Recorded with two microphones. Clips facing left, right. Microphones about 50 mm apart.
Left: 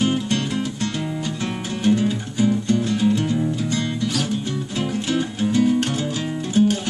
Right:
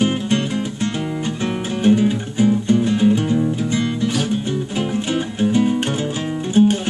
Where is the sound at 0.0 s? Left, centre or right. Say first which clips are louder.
Right 2 dB; right.